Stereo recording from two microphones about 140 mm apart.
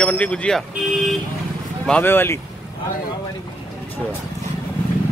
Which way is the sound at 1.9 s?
15° left (ahead or behind).